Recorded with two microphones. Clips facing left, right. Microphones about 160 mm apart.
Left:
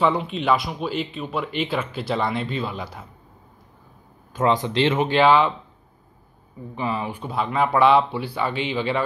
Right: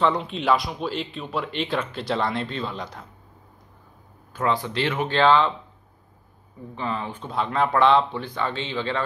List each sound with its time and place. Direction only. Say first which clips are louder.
0.0 s speech: left 1 dB; 5° left (ahead or behind)
4.3 s speech: left 4 dB; 20° left (ahead or behind)
6.7 s speech: left 3 dB; 10° left (ahead or behind)